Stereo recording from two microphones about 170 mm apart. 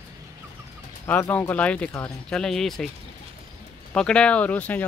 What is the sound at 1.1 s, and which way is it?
Speech, 15° left (ahead or behind).